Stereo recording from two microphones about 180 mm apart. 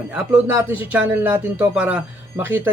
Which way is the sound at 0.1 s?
10° right (ahead or behind).